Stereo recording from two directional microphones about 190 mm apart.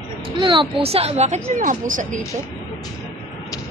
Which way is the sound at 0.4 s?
25° right (ahead or behind).